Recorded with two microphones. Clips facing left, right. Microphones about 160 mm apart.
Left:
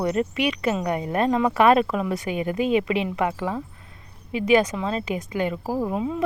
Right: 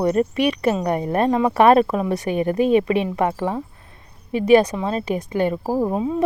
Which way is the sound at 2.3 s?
40° right (ahead or behind).